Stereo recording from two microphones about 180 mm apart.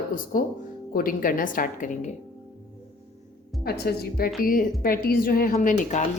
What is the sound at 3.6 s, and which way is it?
A woman's voice, 60° left (ahead or behind).